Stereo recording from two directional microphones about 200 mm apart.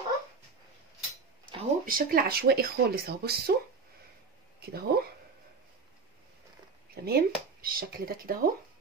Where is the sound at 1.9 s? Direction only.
45° right (ahead or behind).